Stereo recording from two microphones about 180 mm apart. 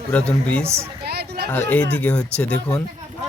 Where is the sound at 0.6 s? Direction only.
15° right (ahead or behind).